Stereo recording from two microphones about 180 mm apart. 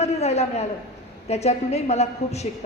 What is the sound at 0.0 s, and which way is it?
A woman's voice, 35° left (ahead or behind).